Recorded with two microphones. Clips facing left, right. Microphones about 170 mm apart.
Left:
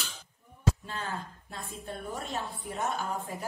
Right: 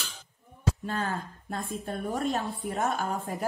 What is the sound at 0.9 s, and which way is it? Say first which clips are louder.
A woman's voice: right 5 dB; 45° right (ahead or behind).